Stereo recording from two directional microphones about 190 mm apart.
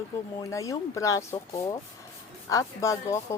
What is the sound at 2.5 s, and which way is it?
Speech, 15° left (ahead or behind).